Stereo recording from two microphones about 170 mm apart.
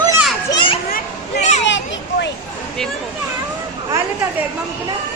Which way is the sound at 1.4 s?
40° left (ahead or behind).